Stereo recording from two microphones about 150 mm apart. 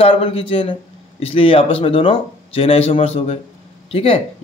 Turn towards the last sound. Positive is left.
turn(degrees=40)  # may be behind; listen again after turning